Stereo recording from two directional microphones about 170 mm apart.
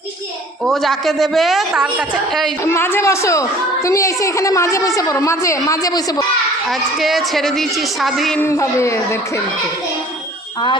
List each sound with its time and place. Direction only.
0.7 s a woman's voice: centre (ahead or behind)
2.6 s a child's voice: 15° left (ahead or behind)
6.7 s a woman's voice: centre (ahead or behind)
8.4 s a child's voice: 15° left (ahead or behind)